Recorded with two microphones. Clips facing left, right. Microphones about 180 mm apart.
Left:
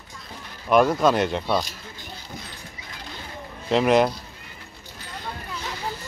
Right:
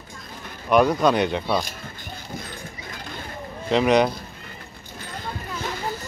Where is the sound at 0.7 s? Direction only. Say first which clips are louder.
Even; centre (ahead or behind).